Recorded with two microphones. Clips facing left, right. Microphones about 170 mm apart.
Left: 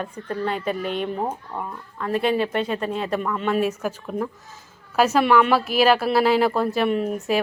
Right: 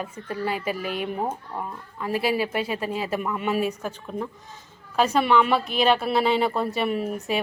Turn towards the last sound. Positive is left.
turn(degrees=0)  # may be behind; listen again after turning